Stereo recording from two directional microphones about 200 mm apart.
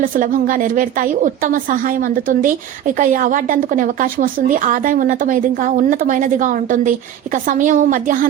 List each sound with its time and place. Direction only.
0.0 s speech: 45° right (ahead or behind)